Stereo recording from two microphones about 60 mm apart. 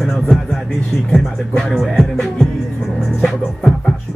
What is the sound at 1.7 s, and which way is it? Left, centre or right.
Music, centre.